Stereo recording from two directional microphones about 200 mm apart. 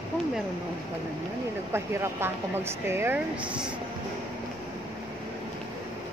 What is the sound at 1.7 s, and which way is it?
Speech, 10° right (ahead or behind).